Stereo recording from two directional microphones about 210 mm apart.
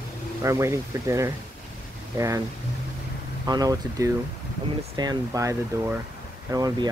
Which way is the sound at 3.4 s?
20° right (ahead or behind).